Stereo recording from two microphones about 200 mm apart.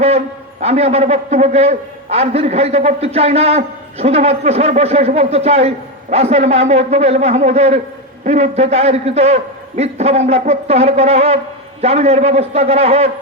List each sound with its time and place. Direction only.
0.6 s a man's voice: 30° right (ahead or behind)